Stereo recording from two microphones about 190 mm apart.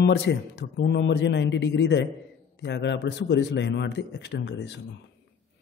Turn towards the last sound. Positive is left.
turn(degrees=65)  # may be behind; listen again after turning